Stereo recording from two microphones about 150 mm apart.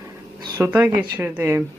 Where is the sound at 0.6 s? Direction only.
15° right (ahead or behind).